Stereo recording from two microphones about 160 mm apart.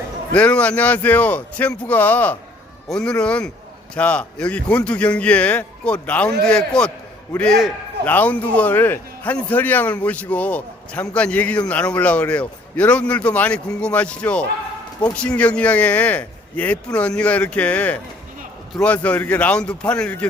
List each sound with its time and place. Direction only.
0.3 s a man's voice: 10° left (ahead or behind)